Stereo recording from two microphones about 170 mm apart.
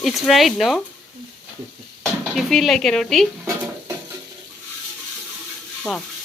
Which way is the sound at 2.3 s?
Centre (ahead or behind).